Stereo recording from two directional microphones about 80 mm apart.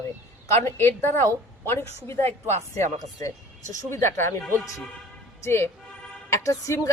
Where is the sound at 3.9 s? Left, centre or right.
Left.